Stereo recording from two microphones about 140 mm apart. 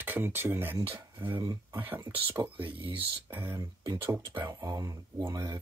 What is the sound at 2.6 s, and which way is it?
Speech, 40° right (ahead or behind).